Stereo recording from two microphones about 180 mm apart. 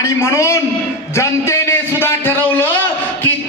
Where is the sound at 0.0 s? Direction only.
15° left (ahead or behind).